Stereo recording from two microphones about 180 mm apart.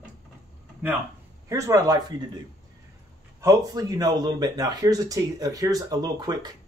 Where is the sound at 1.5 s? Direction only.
20° right (ahead or behind).